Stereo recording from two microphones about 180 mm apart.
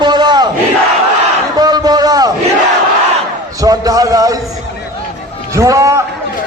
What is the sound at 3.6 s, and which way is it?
Music, 20° right (ahead or behind).